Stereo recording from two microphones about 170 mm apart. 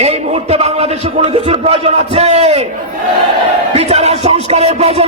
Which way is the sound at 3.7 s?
40° right (ahead or behind).